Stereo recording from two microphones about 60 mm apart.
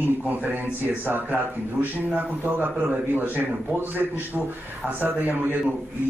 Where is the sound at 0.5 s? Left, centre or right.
Right.